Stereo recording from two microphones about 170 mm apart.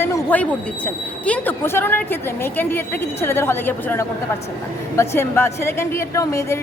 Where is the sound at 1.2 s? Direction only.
10° left (ahead or behind).